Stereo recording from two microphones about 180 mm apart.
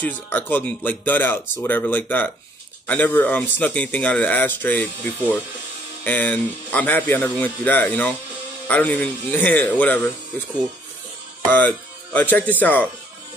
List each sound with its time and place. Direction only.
0.0 s speech: 10° left (ahead or behind)
11.5 s speech: 10° left (ahead or behind)